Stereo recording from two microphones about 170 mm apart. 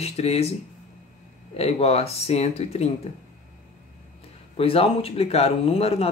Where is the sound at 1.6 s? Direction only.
40° left (ahead or behind).